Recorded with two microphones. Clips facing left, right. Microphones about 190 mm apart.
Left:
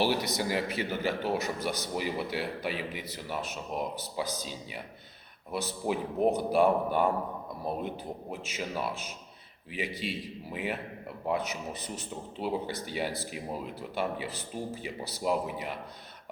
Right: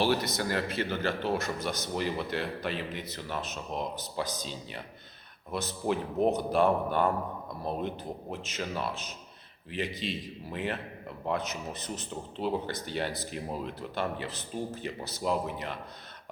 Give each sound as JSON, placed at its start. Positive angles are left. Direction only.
{"t": 0.0, "sound": "speech", "side_deg": 10}
{"t": 10.0, "sound": "speech", "side_deg": 10}